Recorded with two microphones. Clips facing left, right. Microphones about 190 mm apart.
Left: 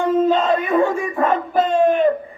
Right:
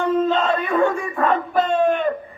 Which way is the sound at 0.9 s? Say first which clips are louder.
Left 1 dB; 20° left (ahead or behind).